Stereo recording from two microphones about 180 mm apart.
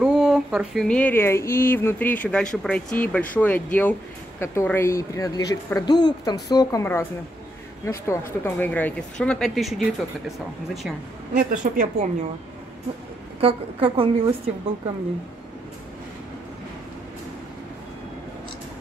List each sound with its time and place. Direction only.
0.0 s speech: 5° right (ahead or behind)
11.3 s a woman's voice: 50° right (ahead or behind)
13.4 s a woman's voice: 30° right (ahead or behind)